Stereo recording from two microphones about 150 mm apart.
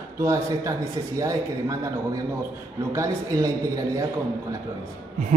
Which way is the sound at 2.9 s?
20° right (ahead or behind).